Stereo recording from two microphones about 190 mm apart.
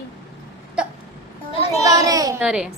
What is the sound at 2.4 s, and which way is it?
Speech, 5° right (ahead or behind).